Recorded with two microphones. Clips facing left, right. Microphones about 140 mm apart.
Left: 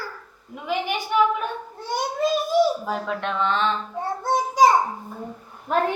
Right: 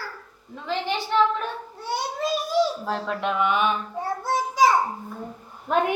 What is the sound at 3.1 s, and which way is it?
Mantra, 5° right (ahead or behind).